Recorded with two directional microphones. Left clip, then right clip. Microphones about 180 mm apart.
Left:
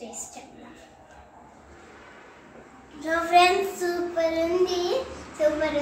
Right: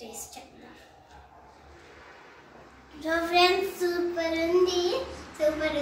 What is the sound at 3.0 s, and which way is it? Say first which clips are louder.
Child singing: left 4 dB; 5° left (ahead or behind).